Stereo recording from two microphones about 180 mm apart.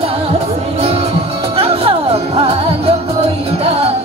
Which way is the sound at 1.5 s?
35° right (ahead or behind).